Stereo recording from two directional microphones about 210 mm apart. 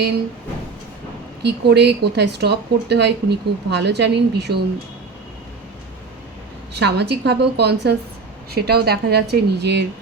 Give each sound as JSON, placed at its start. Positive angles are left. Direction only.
{"t": 1.4, "sound": "speech", "side_deg": -50}
{"t": 6.7, "sound": "speech", "side_deg": -55}